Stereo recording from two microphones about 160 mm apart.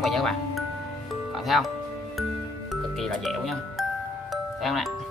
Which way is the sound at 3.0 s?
Centre (ahead or behind).